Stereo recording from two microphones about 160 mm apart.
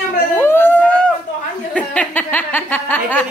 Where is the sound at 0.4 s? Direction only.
15° left (ahead or behind).